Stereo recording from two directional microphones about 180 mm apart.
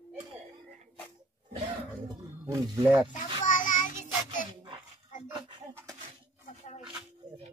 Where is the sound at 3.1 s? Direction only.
45° left (ahead or behind).